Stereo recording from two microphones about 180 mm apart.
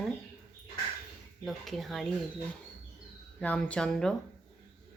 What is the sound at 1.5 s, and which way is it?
Speech, centre (ahead or behind).